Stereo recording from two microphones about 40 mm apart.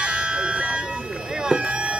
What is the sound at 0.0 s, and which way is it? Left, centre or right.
Bagpipes, right.